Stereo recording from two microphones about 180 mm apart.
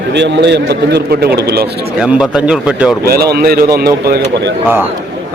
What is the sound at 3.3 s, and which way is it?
A man's voice, 60° right (ahead or behind).